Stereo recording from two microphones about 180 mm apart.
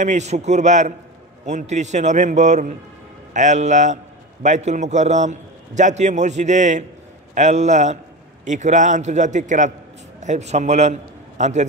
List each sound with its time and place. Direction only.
0.0 s a man's voice: 40° right (ahead or behind)